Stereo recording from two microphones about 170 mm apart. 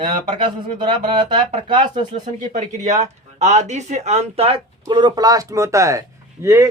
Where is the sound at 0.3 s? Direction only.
30° right (ahead or behind).